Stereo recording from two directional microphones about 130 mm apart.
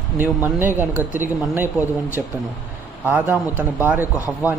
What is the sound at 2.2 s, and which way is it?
A man's voice, 5° right (ahead or behind).